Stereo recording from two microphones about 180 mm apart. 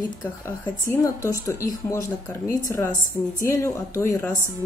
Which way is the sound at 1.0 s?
20° left (ahead or behind).